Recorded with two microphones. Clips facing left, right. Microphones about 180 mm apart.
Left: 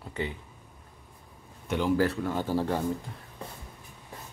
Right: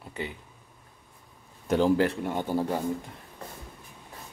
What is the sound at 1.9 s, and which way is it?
Speech, 20° right (ahead or behind).